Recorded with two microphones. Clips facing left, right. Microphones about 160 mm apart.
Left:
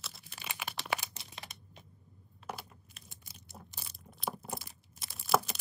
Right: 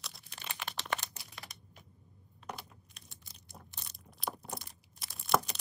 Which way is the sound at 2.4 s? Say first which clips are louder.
Left 1 dB; centre (ahead or behind).